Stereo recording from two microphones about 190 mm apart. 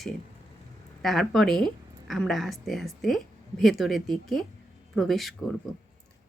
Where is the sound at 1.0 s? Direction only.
Centre (ahead or behind).